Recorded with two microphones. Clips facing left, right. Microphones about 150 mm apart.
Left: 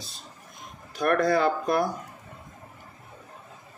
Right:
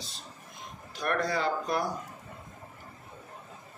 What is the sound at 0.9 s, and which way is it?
Speech, 50° left (ahead or behind).